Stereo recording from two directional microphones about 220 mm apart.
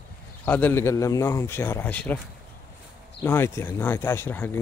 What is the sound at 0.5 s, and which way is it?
A man's voice, 10° left (ahead or behind).